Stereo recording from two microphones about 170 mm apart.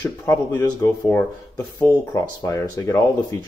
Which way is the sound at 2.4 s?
20° left (ahead or behind).